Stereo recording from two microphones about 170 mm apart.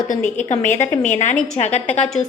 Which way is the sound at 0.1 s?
45° left (ahead or behind).